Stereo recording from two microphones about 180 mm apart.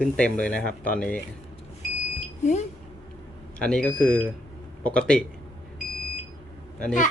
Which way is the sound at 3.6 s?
5° left (ahead or behind).